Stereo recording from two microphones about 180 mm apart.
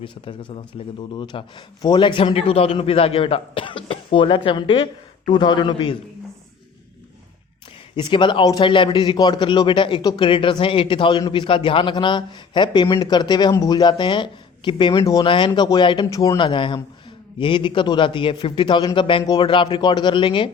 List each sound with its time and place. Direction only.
0.0 s a man's voice: 30° left (ahead or behind)
7.9 s a man's voice: 25° left (ahead or behind)